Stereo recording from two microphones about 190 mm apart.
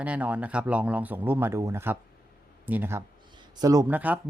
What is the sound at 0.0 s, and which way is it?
Speech, 5° right (ahead or behind).